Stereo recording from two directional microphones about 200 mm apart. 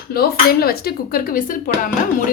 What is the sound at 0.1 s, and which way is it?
Speech, 50° left (ahead or behind).